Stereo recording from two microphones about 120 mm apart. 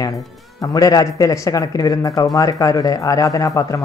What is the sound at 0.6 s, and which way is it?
Speech, 30° left (ahead or behind).